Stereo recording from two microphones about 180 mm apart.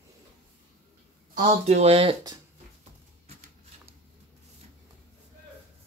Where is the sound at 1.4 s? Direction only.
40° right (ahead or behind).